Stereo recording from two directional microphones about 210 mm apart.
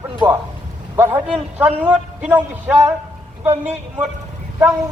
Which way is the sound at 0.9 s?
10° right (ahead or behind).